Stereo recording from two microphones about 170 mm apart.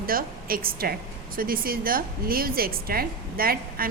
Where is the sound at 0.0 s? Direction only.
60° right (ahead or behind).